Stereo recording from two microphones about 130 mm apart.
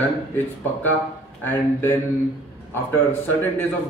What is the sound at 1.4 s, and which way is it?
A man's voice, 15° left (ahead or behind).